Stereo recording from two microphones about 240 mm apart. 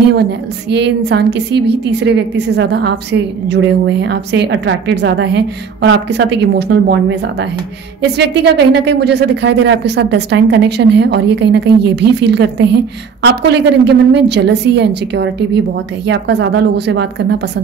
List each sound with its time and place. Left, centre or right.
0.1 s a woman's voice: right